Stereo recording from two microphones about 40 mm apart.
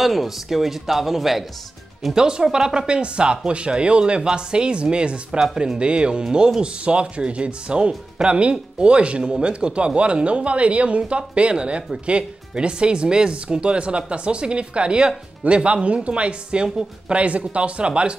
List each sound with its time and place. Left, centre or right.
0.0 s a man's voice: centre
2.1 s speech: centre